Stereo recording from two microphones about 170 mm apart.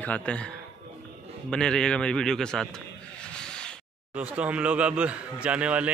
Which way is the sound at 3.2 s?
5° left (ahead or behind).